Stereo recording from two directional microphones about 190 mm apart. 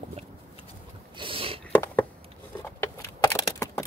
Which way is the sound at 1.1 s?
30° right (ahead or behind).